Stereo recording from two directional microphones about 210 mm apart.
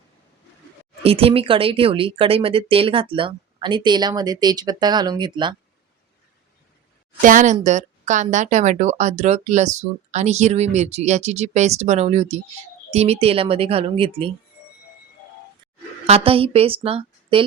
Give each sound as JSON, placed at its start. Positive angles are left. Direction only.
{"t": 1.0, "sound": "speech", "side_deg": -30}
{"t": 7.2, "sound": "speech", "side_deg": -40}
{"t": 16.0, "sound": "a woman's voice", "side_deg": -30}